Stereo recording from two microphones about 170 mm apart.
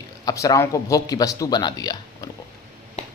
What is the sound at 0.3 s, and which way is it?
A man's voice, 20° left (ahead or behind).